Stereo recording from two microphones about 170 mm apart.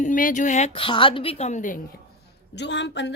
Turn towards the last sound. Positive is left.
turn(degrees=90)